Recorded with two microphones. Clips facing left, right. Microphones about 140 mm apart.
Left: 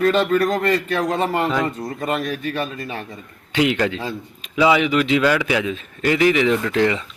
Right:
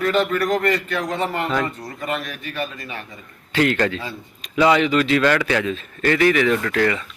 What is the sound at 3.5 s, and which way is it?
Speech, 15° left (ahead or behind).